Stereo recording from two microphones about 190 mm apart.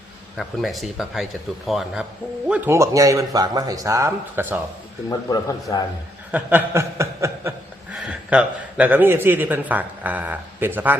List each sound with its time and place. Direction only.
0.3 s speech: centre (ahead or behind)
2.5 s speech: 15° right (ahead or behind)
5.0 s a man's voice: 20° left (ahead or behind)
6.3 s chuckle: 10° right (ahead or behind)
7.9 s speech: 5° right (ahead or behind)